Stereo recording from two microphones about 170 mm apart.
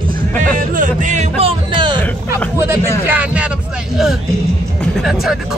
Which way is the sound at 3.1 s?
10° right (ahead or behind).